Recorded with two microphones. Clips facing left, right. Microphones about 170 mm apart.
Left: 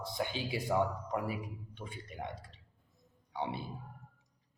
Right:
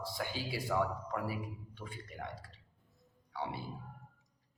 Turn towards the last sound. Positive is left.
turn(degrees=20)  # may be behind; listen again after turning